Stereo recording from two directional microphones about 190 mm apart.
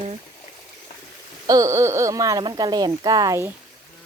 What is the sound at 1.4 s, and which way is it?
Speech, 20° right (ahead or behind).